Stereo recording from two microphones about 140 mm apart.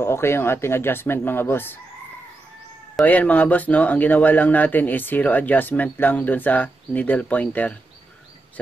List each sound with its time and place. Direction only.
0.0 s a man's voice: 15° left (ahead or behind)
3.1 s a man's voice: 10° left (ahead or behind)